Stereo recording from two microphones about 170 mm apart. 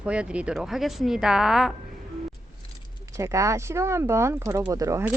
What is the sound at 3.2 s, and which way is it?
Speech, 20° right (ahead or behind).